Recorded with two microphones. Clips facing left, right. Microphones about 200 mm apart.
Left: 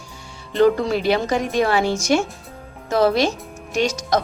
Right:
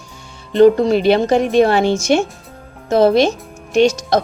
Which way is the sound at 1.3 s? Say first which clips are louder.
Right 7 dB; 65° right (ahead or behind).